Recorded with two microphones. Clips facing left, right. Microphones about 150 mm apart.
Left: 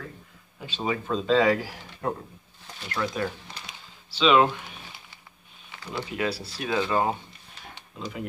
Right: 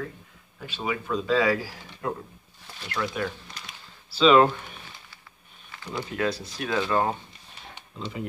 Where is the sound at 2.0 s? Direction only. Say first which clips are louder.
Left 1 dB; 30° left (ahead or behind).